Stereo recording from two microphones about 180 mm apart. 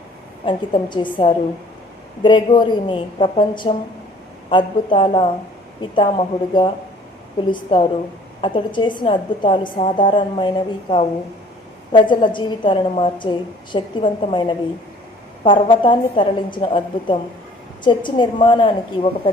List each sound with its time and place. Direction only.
0.4 s a woman's voice: 25° left (ahead or behind)